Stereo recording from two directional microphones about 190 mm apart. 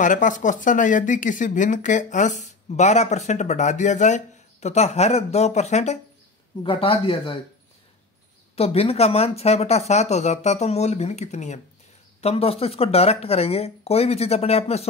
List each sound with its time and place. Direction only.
0.0 s speech: 40° left (ahead or behind)
8.5 s speech: 30° left (ahead or behind)